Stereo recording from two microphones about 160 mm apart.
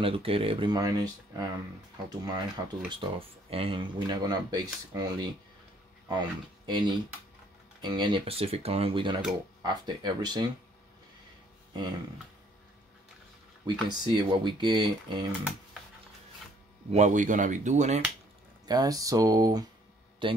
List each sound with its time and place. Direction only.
0.0 s speech: 35° right (ahead or behind)
13.8 s speech: 30° right (ahead or behind)
16.9 s speech: 50° right (ahead or behind)
18.7 s speech: 25° right (ahead or behind)